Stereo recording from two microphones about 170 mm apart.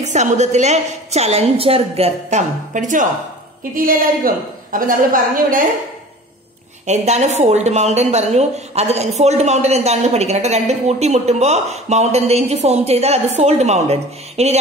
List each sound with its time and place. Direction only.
0.0 s a woman's voice: 45° right (ahead or behind)
6.9 s a woman's voice: 40° right (ahead or behind)